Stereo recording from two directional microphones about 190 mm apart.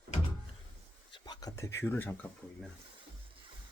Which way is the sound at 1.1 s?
20° left (ahead or behind).